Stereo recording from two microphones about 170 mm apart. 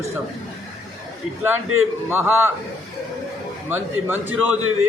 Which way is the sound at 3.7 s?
10° right (ahead or behind).